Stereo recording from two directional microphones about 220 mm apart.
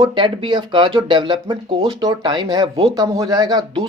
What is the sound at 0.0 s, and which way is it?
Speech, 20° right (ahead or behind).